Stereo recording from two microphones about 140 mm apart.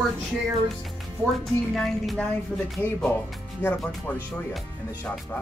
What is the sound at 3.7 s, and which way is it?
Speech, 10° left (ahead or behind).